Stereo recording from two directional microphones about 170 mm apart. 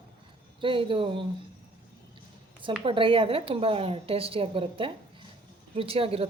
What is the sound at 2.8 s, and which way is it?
A woman's voice, 30° right (ahead or behind).